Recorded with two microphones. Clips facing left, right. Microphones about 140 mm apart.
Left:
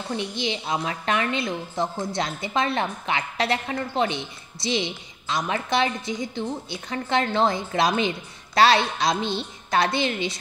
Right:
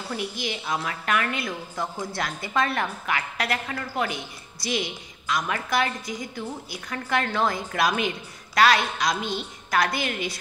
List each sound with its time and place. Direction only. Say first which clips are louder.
0.1 s a woman's voice: left 3 dB; 25° left (ahead or behind)